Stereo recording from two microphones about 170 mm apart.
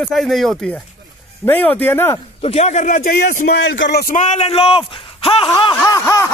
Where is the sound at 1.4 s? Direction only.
10° left (ahead or behind).